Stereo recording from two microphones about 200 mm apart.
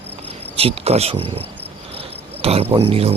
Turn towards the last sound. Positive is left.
turn(degrees=-30)  # may be behind; listen again after turning